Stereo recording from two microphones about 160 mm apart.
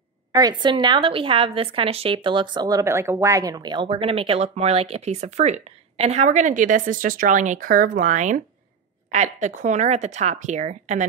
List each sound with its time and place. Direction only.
0.3 s a woman's voice: 25° right (ahead or behind); by 11.1 s 50° right (ahead or behind)